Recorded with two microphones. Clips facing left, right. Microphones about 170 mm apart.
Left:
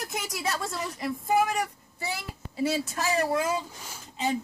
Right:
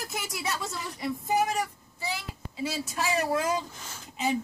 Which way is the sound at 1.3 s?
60° left (ahead or behind).